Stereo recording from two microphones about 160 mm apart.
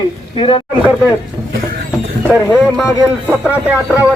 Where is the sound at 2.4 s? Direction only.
15° left (ahead or behind).